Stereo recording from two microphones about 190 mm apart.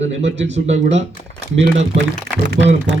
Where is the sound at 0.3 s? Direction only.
70° right (ahead or behind).